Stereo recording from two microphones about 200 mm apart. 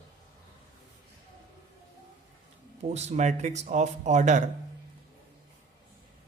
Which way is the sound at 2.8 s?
35° right (ahead or behind).